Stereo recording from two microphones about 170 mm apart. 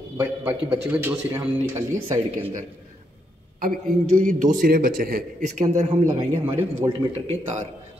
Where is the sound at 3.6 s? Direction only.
55° right (ahead or behind).